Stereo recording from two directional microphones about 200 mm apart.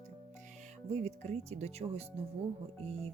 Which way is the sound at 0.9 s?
30° right (ahead or behind).